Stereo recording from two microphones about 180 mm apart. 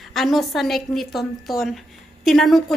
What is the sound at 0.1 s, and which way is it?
A woman's voice, centre (ahead or behind).